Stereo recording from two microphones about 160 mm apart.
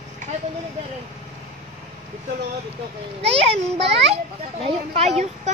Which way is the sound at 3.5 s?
90° right.